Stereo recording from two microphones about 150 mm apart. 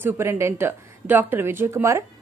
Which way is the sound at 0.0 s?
15° right (ahead or behind).